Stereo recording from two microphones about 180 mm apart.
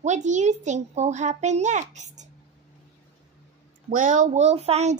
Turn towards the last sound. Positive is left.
turn(degrees=-35)  # may be behind; listen again after turning